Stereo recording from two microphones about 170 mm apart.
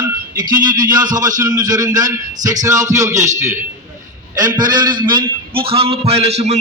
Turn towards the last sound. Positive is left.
turn(degrees=-40)  # may be behind; listen again after turning